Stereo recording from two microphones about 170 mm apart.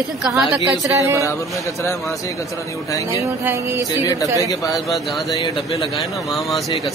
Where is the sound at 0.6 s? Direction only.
15° right (ahead or behind).